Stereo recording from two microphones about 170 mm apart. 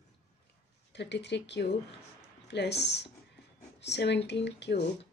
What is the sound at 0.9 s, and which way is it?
Speech, 90° left.